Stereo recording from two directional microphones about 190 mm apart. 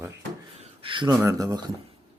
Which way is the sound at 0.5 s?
30° right (ahead or behind).